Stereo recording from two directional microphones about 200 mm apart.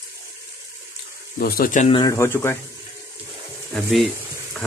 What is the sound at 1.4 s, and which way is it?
Speech, 45° left (ahead or behind).